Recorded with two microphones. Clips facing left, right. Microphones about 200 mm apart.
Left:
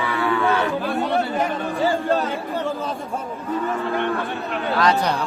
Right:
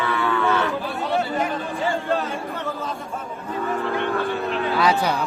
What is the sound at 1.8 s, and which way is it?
Chatter, 35° left (ahead or behind).